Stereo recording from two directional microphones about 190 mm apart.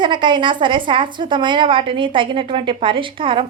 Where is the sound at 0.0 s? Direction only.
25° right (ahead or behind).